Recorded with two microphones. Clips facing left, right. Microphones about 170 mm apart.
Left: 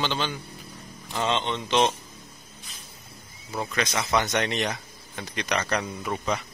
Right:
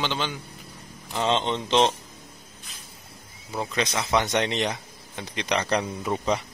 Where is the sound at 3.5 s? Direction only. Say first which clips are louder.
Right 1 dB; 20° right (ahead or behind).